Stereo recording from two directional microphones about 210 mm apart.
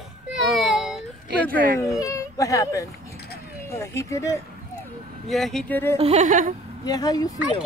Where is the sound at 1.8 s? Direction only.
15° left (ahead or behind).